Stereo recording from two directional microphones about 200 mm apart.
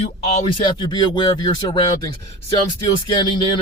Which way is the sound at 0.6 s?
20° left (ahead or behind).